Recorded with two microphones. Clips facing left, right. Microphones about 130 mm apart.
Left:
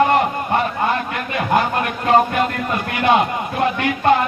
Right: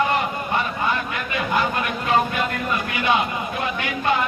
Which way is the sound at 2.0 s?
45° left (ahead or behind).